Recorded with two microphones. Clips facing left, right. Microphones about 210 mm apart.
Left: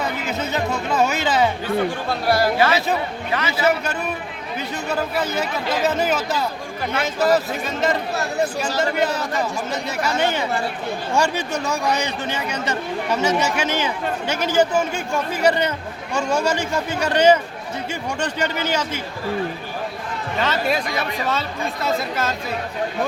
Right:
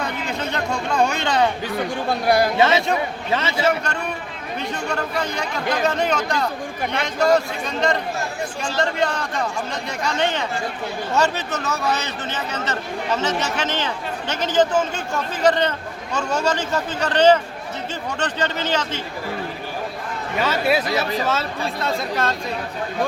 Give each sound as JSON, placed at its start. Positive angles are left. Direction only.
{"t": 0.3, "sound": "speech", "side_deg": 5}
{"t": 2.2, "sound": "speech", "side_deg": -15}
{"t": 4.9, "sound": "speech", "side_deg": 5}
{"t": 20.4, "sound": "speech", "side_deg": -5}